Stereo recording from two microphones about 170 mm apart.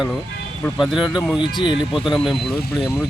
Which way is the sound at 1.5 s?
30° left (ahead or behind).